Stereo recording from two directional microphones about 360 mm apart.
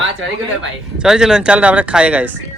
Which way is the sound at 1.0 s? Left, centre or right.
Centre.